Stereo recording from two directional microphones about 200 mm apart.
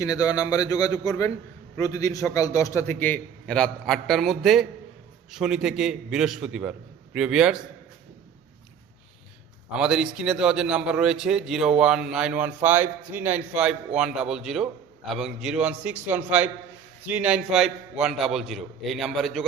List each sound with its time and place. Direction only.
0.0 s a man's voice: 20° left (ahead or behind); by 7.6 s 5° right (ahead or behind)
9.7 s a man's voice: 5° right (ahead or behind)